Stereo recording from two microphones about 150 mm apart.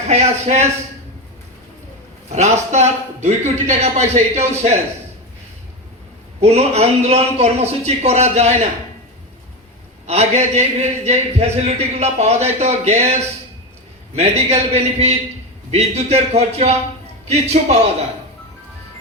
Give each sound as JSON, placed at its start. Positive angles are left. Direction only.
{"t": 0.1, "sound": "a man's voice", "side_deg": -45}
{"t": 2.3, "sound": "a man's voice", "side_deg": -50}
{"t": 6.4, "sound": "a man's voice", "side_deg": -45}
{"t": 10.1, "sound": "a man's voice", "side_deg": -45}
{"t": 14.2, "sound": "a man's voice", "side_deg": -45}